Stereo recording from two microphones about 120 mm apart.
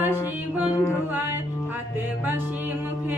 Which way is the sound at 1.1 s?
15° right (ahead or behind).